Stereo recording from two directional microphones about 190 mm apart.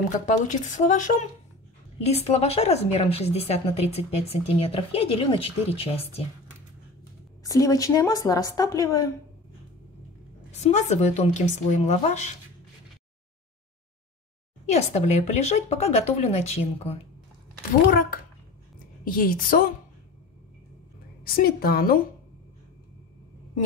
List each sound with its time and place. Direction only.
0.3 s a woman's voice: 40° left (ahead or behind)
7.4 s a woman's voice: 20° left (ahead or behind)
10.6 s a woman's voice: 35° left (ahead or behind)
14.7 s a woman's voice: 35° left (ahead or behind)
19.0 s a woman's voice: 45° left (ahead or behind)
21.2 s a woman's voice: 55° left (ahead or behind)